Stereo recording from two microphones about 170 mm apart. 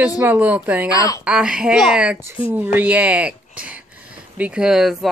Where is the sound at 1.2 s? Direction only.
5° right (ahead or behind).